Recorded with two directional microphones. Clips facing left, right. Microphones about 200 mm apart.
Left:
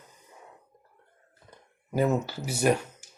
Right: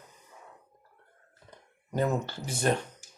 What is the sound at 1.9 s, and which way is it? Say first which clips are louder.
Speech: left 3 dB; 5° left (ahead or behind).